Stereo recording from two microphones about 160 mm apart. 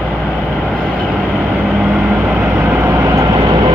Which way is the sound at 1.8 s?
5° right (ahead or behind).